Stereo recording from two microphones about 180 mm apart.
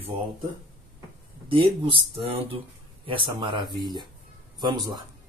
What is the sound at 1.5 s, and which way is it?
Speech, 30° right (ahead or behind).